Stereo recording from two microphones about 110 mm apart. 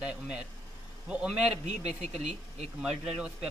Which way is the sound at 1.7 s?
90° right.